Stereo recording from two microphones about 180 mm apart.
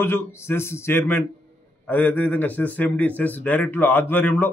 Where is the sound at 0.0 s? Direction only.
10° left (ahead or behind).